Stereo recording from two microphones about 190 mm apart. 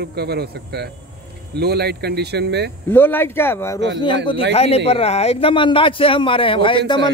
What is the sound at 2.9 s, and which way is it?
Speech, 10° left (ahead or behind).